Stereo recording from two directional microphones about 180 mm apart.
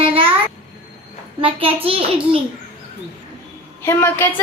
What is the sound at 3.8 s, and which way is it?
Speech, 15° left (ahead or behind).